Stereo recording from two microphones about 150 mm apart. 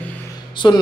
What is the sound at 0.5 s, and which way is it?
Speech, 30° left (ahead or behind).